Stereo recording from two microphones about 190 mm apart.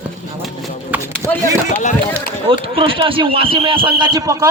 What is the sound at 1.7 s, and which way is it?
Speech, 40° left (ahead or behind).